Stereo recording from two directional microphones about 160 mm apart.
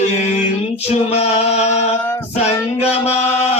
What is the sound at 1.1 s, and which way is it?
Music, 40° left (ahead or behind).